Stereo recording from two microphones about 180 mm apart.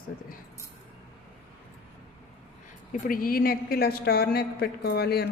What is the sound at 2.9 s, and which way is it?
A woman's voice, 50° left (ahead or behind).